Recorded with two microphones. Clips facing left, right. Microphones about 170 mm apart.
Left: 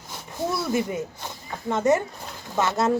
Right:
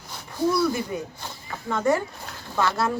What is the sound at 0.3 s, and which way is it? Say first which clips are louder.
Speech: right 2 dB; 20° left (ahead or behind).